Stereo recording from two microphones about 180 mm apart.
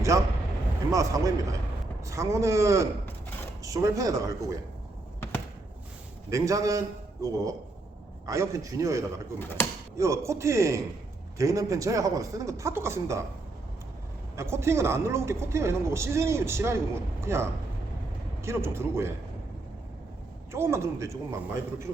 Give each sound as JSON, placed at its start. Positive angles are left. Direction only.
{"t": 0.1, "sound": "speech", "side_deg": -20}
{"t": 6.3, "sound": "speech", "side_deg": -20}
{"t": 9.4, "sound": "speech", "side_deg": 10}
{"t": 10.0, "sound": "speech", "side_deg": -15}
{"t": 14.3, "sound": "speech", "side_deg": -15}
{"t": 20.5, "sound": "speech", "side_deg": -15}